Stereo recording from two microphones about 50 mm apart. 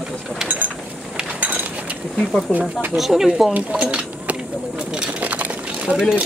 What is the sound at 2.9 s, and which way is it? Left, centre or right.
Speech, centre.